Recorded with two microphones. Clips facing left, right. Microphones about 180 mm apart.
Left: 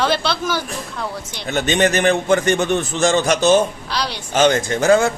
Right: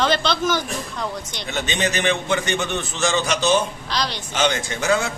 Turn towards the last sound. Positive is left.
turn(degrees=50)  # may be behind; listen again after turning